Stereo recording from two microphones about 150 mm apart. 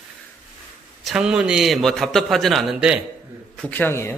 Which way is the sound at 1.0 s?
5° right (ahead or behind).